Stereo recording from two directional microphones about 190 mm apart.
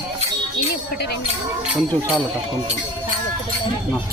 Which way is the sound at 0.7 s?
55° left (ahead or behind).